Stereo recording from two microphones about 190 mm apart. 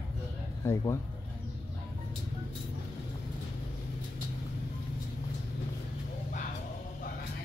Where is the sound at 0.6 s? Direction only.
15° left (ahead or behind).